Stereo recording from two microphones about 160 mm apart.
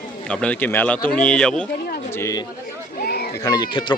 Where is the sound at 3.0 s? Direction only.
80° left.